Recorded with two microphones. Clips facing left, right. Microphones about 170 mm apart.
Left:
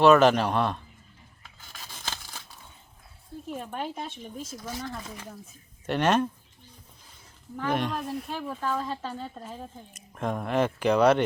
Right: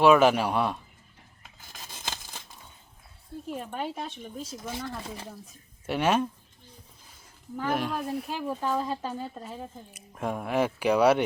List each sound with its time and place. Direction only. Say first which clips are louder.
0.0 s speech: left 1 dB; 10° right (ahead or behind)
1.9 s scissors: even; 15° right (ahead or behind)
3.5 s speech: even; centre (ahead or behind)
4.5 s speech: right 1 dB; 25° right (ahead or behind)
5.8 s speech: left 1 dB; 5° right (ahead or behind)
7.5 s speech: left 1 dB; 5° right (ahead or behind)